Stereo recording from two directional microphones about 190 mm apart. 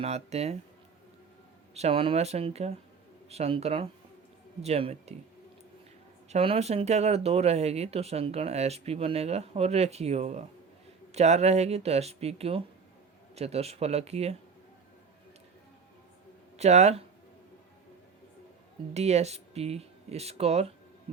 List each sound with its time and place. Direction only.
0.0 s speech: 35° right (ahead or behind)
1.7 s speech: 30° right (ahead or behind)
6.2 s speech: 30° right (ahead or behind)
16.6 s speech: 35° right (ahead or behind)
18.9 s speech: 35° right (ahead or behind)